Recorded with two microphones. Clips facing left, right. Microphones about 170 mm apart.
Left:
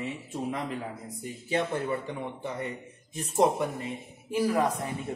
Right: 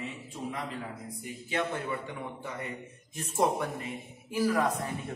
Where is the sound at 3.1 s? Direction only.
20° left (ahead or behind).